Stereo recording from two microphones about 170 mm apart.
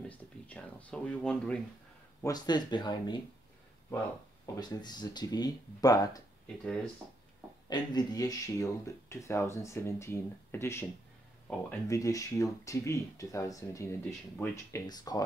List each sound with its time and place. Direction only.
0.1 s a sound: 10° left (ahead or behind)
2.2 s speech: 25° left (ahead or behind)
4.6 s speech: 25° left (ahead or behind)
6.4 s speech: 5° left (ahead or behind)
7.7 s speech: 25° left (ahead or behind)